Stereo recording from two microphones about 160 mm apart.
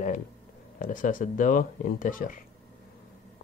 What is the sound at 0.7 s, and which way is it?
Speech, 55° left (ahead or behind).